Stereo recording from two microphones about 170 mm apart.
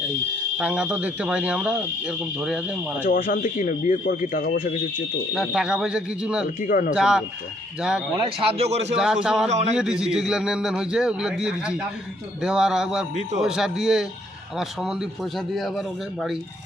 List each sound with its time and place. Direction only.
0.6 s speech: 5° right (ahead or behind)
3.1 s speech: 55° left (ahead or behind)
5.3 s a man's voice: centre (ahead or behind)
6.6 s speech: 55° left (ahead or behind)
6.9 s a man's voice: 5° right (ahead or behind)
8.1 s a man's voice: 30° right (ahead or behind)
9.0 s a man's voice: 5° right (ahead or behind)
9.5 s a man's voice: 40° right (ahead or behind)
9.7 s a man's voice: 5° right (ahead or behind)